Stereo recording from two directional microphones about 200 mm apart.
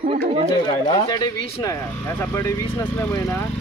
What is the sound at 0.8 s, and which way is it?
Speech, 20° left (ahead or behind).